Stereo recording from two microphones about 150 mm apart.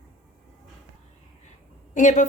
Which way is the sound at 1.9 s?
55° left (ahead or behind).